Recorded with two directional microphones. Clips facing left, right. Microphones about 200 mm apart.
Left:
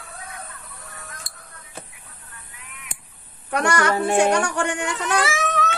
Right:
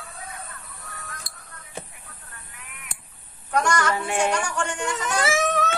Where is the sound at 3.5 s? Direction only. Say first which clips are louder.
Left 2 dB; 65° left (ahead or behind).